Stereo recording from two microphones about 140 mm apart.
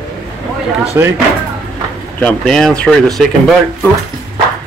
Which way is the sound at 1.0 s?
20° right (ahead or behind).